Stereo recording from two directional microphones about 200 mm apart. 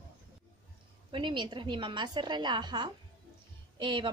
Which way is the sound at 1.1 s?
25° right (ahead or behind).